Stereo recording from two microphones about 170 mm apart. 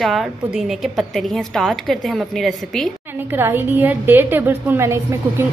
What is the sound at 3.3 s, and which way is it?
A woman's voice, 10° right (ahead or behind).